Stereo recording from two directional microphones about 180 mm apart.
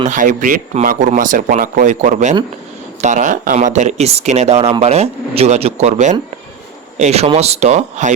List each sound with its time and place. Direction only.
0.0 s speech: 45° right (ahead or behind)